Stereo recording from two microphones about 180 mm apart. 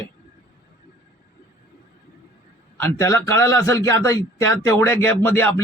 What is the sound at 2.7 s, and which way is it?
A man's voice, 15° left (ahead or behind).